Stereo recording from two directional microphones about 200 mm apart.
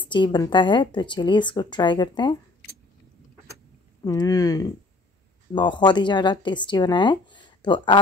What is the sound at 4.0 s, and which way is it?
Speech, 20° left (ahead or behind).